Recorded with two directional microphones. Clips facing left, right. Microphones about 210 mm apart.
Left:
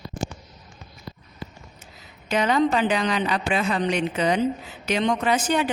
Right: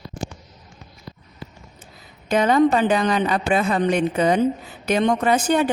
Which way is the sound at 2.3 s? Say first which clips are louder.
Right 4 dB; 50° right (ahead or behind).